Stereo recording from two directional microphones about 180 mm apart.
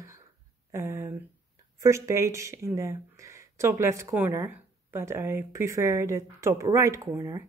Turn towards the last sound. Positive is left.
turn(degrees=-15)  # may be behind; listen again after turning